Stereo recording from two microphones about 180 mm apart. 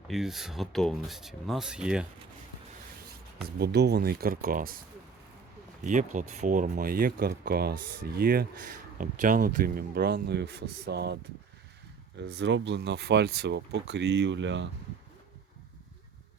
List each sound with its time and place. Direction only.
0.1 s speech: centre (ahead or behind)
3.4 s speech: 65° right (ahead or behind)
5.8 s speech: 45° right (ahead or behind); by 11.2 s 65° right (ahead or behind)
12.4 s speech: 85° right